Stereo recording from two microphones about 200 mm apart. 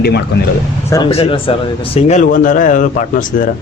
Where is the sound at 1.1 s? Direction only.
30° left (ahead or behind).